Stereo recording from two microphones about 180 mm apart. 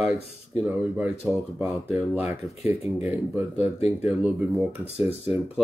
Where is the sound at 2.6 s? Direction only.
35° left (ahead or behind).